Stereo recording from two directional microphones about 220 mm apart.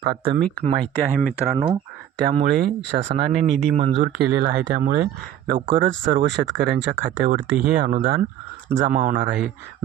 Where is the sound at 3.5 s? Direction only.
5° left (ahead or behind).